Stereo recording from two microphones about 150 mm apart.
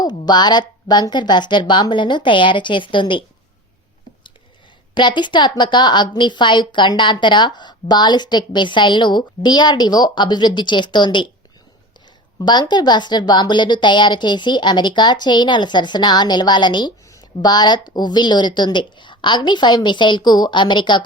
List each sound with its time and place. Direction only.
0.3 s a woman's voice: 30° left (ahead or behind)
4.9 s a woman's voice: 30° left (ahead or behind)
12.4 s a woman's voice: 30° left (ahead or behind)